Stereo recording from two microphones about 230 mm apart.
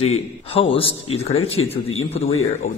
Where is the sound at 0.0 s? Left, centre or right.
Left.